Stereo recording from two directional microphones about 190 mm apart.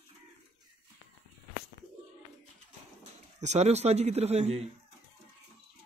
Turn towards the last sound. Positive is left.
turn(degrees=-35)  # may be behind; listen again after turning